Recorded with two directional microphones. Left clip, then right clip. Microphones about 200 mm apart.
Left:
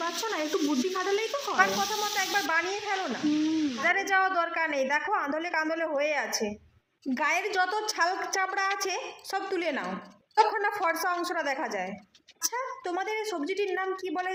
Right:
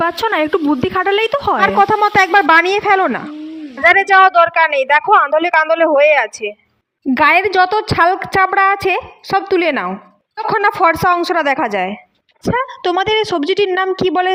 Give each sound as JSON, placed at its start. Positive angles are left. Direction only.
{"t": 0.0, "sound": "a woman's voice", "side_deg": -45}